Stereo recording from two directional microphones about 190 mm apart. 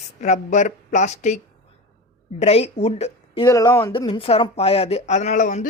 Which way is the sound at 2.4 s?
30° left (ahead or behind).